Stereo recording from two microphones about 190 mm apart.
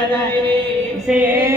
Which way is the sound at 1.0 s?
5° right (ahead or behind).